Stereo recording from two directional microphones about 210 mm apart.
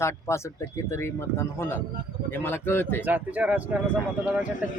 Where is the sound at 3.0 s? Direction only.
10° right (ahead or behind).